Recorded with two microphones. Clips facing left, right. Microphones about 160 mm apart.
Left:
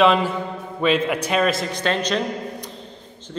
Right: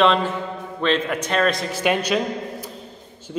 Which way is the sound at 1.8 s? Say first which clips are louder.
Right 2 dB; 10° right (ahead or behind).